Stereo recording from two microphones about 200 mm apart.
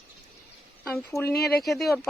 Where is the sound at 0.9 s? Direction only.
15° left (ahead or behind).